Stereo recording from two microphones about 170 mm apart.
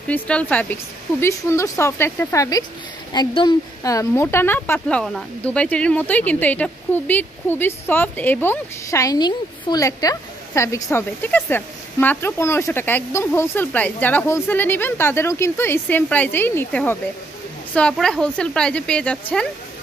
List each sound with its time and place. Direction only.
0.1 s a woman's voice: 10° left (ahead or behind)